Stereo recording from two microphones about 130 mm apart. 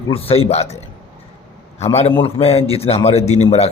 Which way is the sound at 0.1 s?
50° left (ahead or behind).